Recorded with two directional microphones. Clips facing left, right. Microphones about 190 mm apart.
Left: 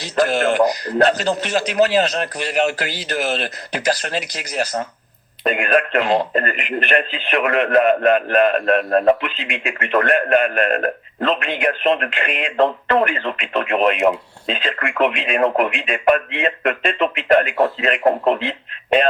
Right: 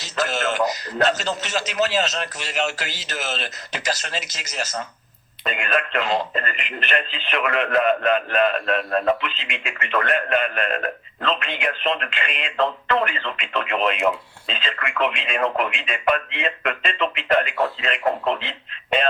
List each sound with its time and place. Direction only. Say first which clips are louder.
0.2 s speech: left 7 dB; 50° left (ahead or behind)
5.4 s speech: left 7 dB; 45° left (ahead or behind)